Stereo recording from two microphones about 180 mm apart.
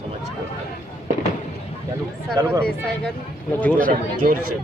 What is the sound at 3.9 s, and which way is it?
Speech, 50° right (ahead or behind).